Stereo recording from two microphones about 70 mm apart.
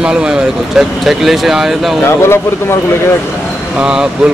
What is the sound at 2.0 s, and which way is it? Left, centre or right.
Speech, left.